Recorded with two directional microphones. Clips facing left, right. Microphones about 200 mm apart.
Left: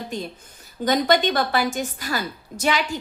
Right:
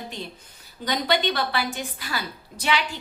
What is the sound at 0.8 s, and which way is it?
A woman's voice, 45° left (ahead or behind).